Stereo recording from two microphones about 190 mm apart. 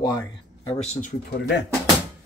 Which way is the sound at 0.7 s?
35° left (ahead or behind).